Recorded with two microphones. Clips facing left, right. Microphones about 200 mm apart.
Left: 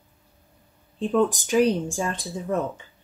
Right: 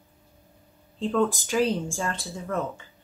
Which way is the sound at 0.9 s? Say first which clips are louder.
Left 2 dB; 15° left (ahead or behind).